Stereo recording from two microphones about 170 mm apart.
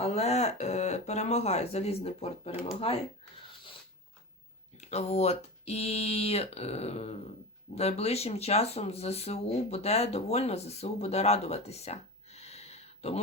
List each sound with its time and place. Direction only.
0.0 s speech: 40° left (ahead or behind)
4.8 s speech: 40° left (ahead or behind)